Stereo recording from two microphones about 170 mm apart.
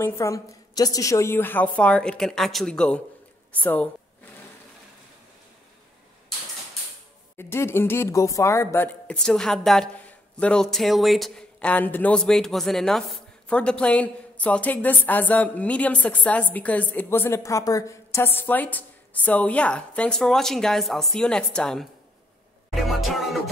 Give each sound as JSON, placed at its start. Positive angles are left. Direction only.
{"t": 0.0, "sound": "a woman's voice", "side_deg": 15}
{"t": 7.3, "sound": "speech", "side_deg": 15}
{"t": 22.8, "sound": "music", "side_deg": 0}